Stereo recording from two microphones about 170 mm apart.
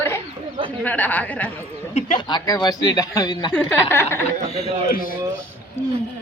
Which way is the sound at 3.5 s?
10° left (ahead or behind).